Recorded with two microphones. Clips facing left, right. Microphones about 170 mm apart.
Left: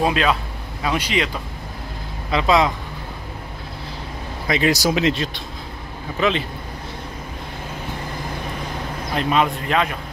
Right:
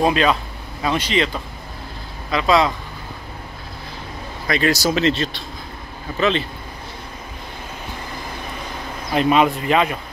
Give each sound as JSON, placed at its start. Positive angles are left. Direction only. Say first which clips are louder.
{"t": 0.0, "sound": "a man's voice", "louder": "right 2 dB", "side_deg": 0}
{"t": 2.3, "sound": "speech", "louder": "even", "side_deg": 20}
{"t": 4.5, "sound": "speech", "louder": "even", "side_deg": 15}
{"t": 9.1, "sound": "a man's voice", "louder": "right 4 dB", "side_deg": -5}